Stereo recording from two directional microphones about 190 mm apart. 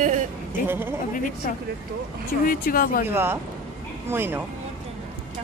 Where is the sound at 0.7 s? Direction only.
10° right (ahead or behind).